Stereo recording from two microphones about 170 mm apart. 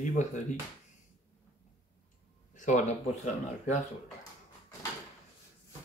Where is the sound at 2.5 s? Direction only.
45° left (ahead or behind).